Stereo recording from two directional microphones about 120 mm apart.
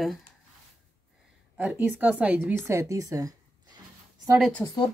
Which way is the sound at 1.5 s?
15° right (ahead or behind).